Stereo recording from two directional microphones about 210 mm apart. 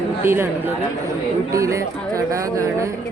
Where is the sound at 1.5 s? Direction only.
15° right (ahead or behind).